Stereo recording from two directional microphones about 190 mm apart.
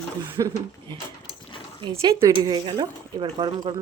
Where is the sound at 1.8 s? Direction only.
30° right (ahead or behind).